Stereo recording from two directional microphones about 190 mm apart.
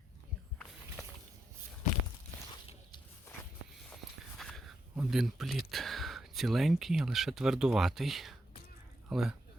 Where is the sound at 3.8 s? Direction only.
Centre (ahead or behind).